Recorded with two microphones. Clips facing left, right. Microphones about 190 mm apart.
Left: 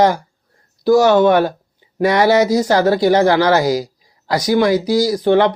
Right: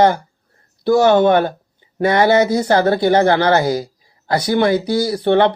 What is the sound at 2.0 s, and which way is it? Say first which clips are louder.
Speech: even; 55° right (ahead or behind).